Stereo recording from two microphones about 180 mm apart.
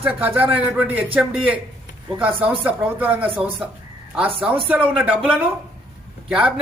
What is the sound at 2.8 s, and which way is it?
Speech, 10° right (ahead or behind).